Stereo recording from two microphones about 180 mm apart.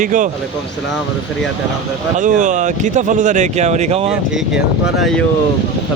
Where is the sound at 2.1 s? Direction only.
45° right (ahead or behind).